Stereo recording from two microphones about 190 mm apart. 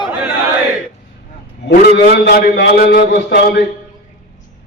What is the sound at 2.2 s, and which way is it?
A man's voice, 60° left (ahead or behind).